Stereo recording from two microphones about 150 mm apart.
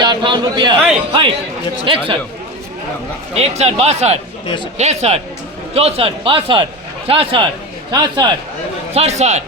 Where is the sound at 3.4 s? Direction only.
45° right (ahead or behind); by 8.3 s 30° right (ahead or behind).